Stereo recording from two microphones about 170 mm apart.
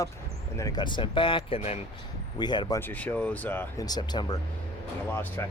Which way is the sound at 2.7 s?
10° left (ahead or behind).